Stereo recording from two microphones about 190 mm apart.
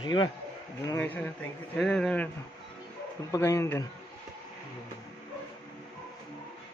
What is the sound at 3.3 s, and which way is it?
Speech, 15° left (ahead or behind).